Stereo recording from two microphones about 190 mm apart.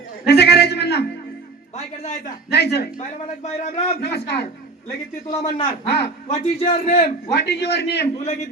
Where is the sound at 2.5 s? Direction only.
60° left (ahead or behind).